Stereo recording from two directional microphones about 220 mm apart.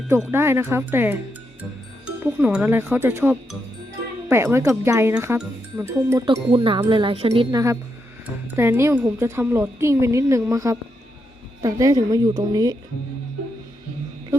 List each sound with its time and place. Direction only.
0.1 s speech: 10° right (ahead or behind)
2.2 s speech: 5° right (ahead or behind)